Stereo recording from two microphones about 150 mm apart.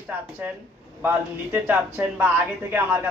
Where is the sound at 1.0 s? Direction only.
10° right (ahead or behind).